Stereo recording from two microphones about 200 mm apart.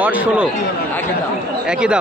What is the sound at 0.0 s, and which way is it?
Speech, 5° right (ahead or behind).